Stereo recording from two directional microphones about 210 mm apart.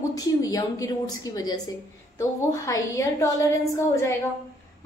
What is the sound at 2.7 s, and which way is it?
A woman's voice, 15° left (ahead or behind).